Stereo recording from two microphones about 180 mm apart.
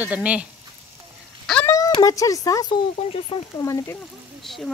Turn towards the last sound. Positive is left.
turn(degrees=0)  # may be behind; listen again after turning